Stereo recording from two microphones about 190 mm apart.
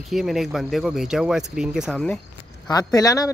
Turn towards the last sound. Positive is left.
turn(degrees=20)  # may be behind; listen again after turning